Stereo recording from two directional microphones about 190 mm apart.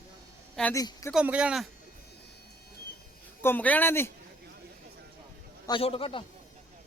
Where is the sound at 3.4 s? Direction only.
10° left (ahead or behind).